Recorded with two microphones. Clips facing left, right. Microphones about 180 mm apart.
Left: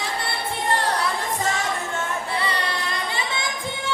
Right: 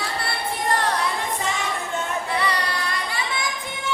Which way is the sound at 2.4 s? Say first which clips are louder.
Right 1 dB; 25° left (ahead or behind).